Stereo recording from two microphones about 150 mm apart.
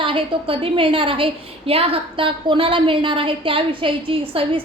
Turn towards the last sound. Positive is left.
turn(degrees=-35)  # may be behind; listen again after turning